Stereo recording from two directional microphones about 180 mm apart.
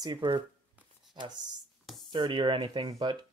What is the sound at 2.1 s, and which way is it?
Speech, 25° right (ahead or behind).